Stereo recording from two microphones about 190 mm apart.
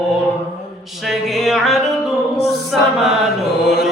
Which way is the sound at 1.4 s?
Centre (ahead or behind).